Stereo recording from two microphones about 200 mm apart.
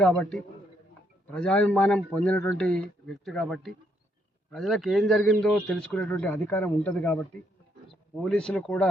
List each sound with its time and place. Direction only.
0.0 s a man's voice: 5° left (ahead or behind)